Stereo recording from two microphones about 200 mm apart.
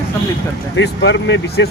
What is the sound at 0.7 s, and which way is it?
Speech, 65° left (ahead or behind).